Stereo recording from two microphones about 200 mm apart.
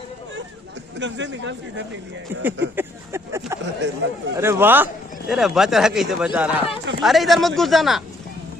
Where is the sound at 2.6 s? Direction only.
10° right (ahead or behind).